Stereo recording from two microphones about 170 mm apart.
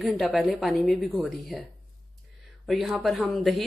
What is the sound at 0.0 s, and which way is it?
A woman's voice, centre (ahead or behind).